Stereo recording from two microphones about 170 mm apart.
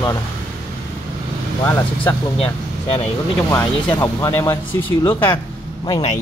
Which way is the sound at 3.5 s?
20° left (ahead or behind).